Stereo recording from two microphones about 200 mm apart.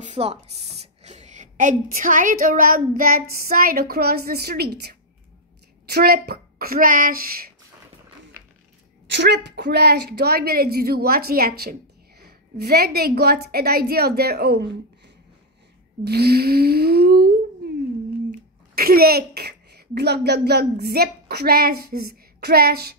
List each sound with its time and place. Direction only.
0.1 s a woman's voice: 30° right (ahead or behind); by 7.5 s 50° right (ahead or behind)
9.0 s a woman's voice: 60° right (ahead or behind)
16.0 s a woman's voice: 55° right (ahead or behind)
18.8 s a woman's voice: 50° right (ahead or behind)